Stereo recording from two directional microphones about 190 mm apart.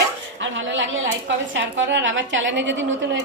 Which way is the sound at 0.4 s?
75° right (ahead or behind).